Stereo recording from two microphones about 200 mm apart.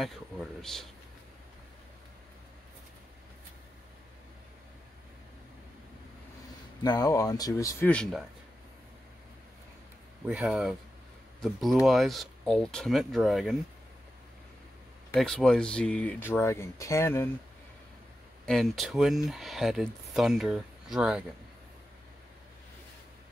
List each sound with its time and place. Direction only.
0.0 s speech: centre (ahead or behind)
6.8 s speech: 20° left (ahead or behind)
7.9 s speech: centre (ahead or behind)
10.2 s speech: 5° right (ahead or behind)
15.1 s speech: centre (ahead or behind)
18.4 s speech: centre (ahead or behind)